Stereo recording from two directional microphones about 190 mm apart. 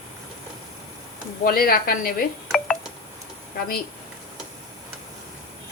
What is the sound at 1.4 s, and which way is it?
Speech, 50° left (ahead or behind).